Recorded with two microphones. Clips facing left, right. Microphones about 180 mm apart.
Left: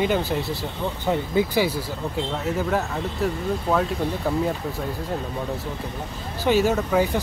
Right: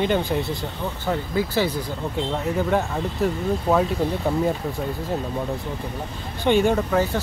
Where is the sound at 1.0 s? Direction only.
15° left (ahead or behind); by 4.4 s centre (ahead or behind).